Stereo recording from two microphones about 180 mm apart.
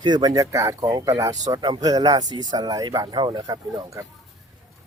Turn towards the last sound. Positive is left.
turn(degrees=-20)  # may be behind; listen again after turning